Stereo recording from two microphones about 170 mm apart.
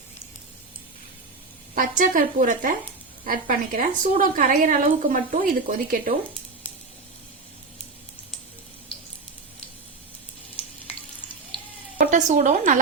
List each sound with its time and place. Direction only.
1.7 s a woman's voice: 50° right (ahead or behind)
11.9 s a woman's voice: 45° right (ahead or behind)